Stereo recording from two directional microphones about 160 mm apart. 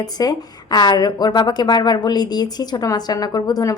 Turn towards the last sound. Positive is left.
turn(degrees=20)  # may be behind; listen again after turning